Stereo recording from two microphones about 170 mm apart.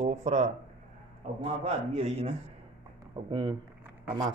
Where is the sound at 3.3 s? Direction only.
25° right (ahead or behind).